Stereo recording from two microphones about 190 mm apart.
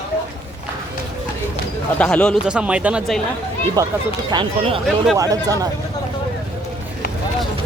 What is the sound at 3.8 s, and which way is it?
Speech, 20° right (ahead or behind).